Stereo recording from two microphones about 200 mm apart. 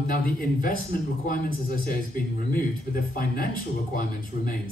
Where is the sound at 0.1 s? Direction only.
45° left (ahead or behind).